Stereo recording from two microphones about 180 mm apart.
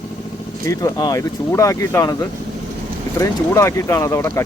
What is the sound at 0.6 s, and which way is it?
Speech, 20° left (ahead or behind).